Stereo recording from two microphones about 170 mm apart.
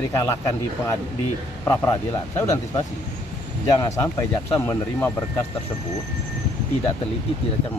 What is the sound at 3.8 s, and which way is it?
Speech, 20° left (ahead or behind).